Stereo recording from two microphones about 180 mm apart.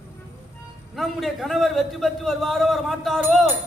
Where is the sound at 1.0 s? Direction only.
Centre (ahead or behind).